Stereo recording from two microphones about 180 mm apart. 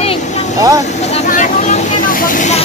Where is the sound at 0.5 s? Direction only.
20° right (ahead or behind).